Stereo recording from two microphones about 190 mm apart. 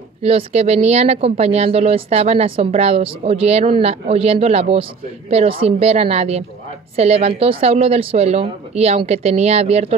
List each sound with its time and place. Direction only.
0.2 s speech: 30° right (ahead or behind)